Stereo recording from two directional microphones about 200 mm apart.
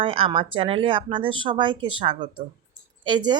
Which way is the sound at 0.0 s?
25° right (ahead or behind).